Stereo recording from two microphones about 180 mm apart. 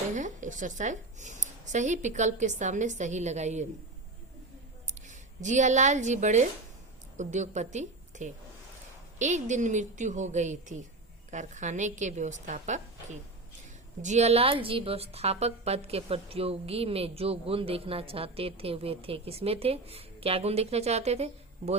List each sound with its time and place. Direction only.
0.1 s a woman's voice: 45° right (ahead or behind)
4.9 s a woman's voice: 40° right (ahead or behind)